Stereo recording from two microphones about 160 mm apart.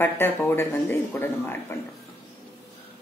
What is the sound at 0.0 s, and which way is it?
A woman's voice, 15° left (ahead or behind).